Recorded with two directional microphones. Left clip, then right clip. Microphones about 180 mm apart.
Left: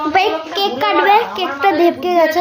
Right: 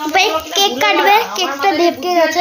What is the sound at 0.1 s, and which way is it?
A child's voice, 5° right (ahead or behind).